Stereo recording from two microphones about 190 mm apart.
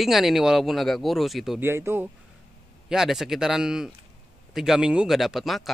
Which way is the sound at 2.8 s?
Centre (ahead or behind).